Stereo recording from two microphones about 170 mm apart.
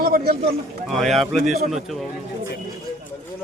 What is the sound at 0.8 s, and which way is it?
Speech, centre (ahead or behind).